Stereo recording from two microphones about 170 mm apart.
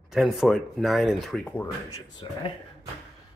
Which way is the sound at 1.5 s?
20° left (ahead or behind).